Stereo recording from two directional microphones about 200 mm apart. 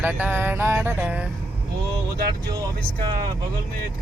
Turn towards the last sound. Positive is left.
turn(degrees=-20)  # may be behind; listen again after turning